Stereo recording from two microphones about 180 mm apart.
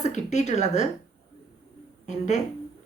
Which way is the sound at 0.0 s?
40° left (ahead or behind).